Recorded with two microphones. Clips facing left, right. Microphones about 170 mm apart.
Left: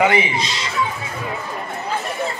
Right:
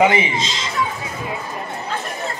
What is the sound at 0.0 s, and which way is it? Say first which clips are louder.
Speech: right 1 dB; 25° right (ahead or behind).